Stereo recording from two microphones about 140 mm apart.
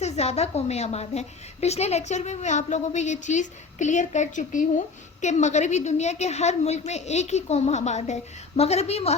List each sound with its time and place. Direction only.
0.0 s a woman's voice: 50° left (ahead or behind)